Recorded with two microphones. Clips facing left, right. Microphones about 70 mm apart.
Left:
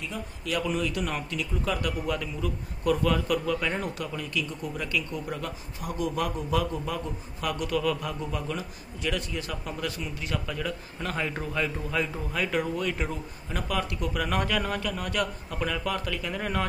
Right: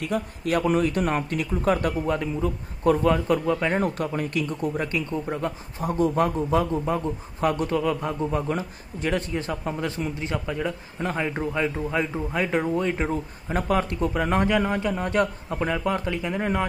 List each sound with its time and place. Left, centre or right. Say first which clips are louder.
0.0 s a man's voice: right 9 dB; right
0.6 s a man's voice: right 6 dB; right
3.8 s a man's voice: right 7 dB; right